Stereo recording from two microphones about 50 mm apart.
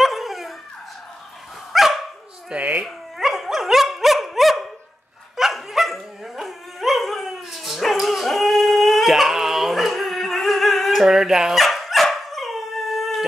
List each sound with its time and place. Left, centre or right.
0.0 s dog: centre
1.7 s dog: centre
2.5 s speech: right
2.8 s dog: centre
11.1 s dog: centre